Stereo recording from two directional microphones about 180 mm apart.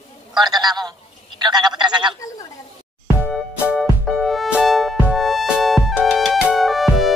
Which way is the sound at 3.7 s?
Centre (ahead or behind).